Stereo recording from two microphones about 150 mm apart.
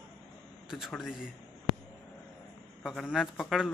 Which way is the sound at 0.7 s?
Centre (ahead or behind).